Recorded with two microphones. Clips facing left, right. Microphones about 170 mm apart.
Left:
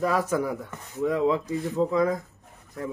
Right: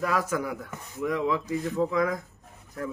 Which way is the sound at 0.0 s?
30° left (ahead or behind).